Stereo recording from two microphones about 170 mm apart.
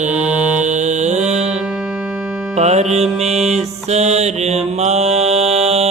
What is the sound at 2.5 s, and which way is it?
Music, 40° right (ahead or behind).